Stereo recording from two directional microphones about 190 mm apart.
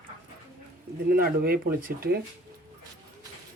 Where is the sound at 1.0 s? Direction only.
55° right (ahead or behind).